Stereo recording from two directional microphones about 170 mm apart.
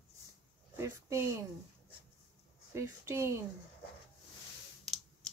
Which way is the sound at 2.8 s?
15° right (ahead or behind).